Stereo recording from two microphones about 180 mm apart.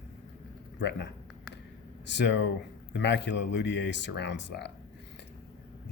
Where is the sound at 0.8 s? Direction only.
75° left (ahead or behind).